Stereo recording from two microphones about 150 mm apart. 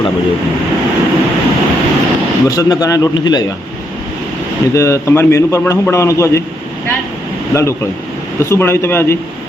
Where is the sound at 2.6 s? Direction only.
25° left (ahead or behind).